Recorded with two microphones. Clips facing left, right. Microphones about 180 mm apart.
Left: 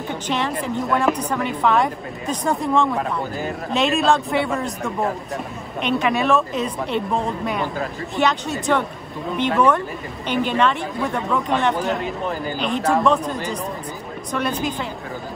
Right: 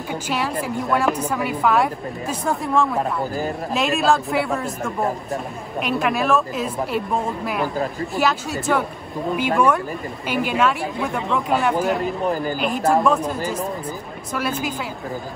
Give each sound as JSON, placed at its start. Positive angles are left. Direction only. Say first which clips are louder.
{"t": 0.1, "sound": "a woman's voice", "louder": "even", "side_deg": -5}
{"t": 12.0, "sound": "speech", "louder": "right 3 dB", "side_deg": -40}
{"t": 12.5, "sound": "a woman's voice", "louder": "left 2 dB", "side_deg": 0}